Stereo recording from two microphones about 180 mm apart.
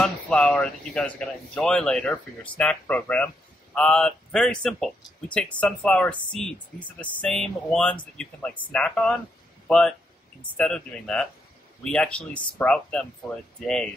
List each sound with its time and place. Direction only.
0.0 s speech: 5° left (ahead or behind)